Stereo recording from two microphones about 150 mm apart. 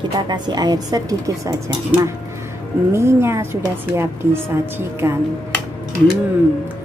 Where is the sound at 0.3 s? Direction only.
25° right (ahead or behind).